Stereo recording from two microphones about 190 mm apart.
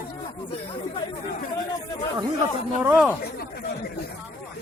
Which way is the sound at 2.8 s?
5° right (ahead or behind).